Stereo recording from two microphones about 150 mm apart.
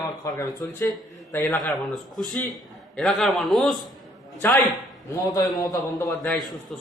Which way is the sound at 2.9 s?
Centre (ahead or behind).